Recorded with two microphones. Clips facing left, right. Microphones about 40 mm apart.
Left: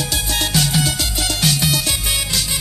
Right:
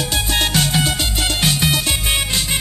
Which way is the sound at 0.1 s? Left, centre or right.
Right.